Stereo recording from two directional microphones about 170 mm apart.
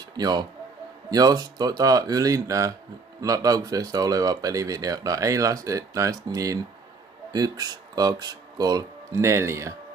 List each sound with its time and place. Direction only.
0.2 s speech: 25° right (ahead or behind)